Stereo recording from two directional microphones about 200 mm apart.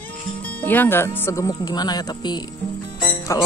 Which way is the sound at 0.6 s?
10° left (ahead or behind).